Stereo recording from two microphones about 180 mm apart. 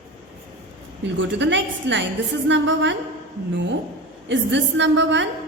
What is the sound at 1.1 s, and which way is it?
A woman's voice, 85° right.